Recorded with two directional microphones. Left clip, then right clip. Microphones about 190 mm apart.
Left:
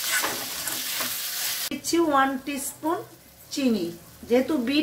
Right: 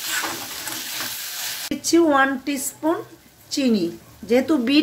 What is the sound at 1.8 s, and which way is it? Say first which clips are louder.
Speech: right 5 dB; 35° right (ahead or behind).